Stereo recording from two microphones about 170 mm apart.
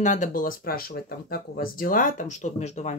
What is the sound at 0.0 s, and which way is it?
Speech, 45° left (ahead or behind).